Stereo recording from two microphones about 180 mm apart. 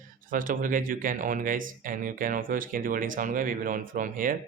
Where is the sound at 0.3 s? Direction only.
50° right (ahead or behind).